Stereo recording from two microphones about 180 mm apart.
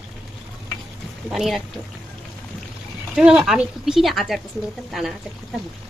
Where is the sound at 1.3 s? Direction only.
Centre (ahead or behind).